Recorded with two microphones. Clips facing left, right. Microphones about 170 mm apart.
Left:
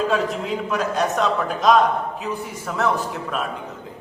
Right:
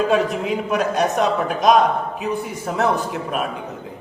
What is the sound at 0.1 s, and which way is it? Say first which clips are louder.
A man's voice: right 3 dB; 15° right (ahead or behind).